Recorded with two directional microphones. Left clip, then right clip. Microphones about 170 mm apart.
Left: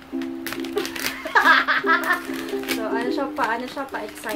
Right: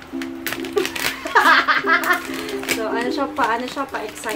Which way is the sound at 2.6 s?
5° left (ahead or behind).